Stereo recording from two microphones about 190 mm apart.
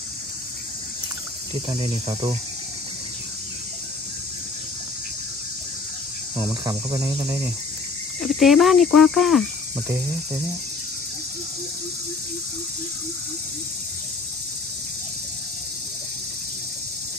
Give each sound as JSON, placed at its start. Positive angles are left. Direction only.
{"t": 1.5, "sound": "cricket", "side_deg": -25}
{"t": 6.3, "sound": "cricket", "side_deg": -15}
{"t": 8.2, "sound": "speech", "side_deg": 0}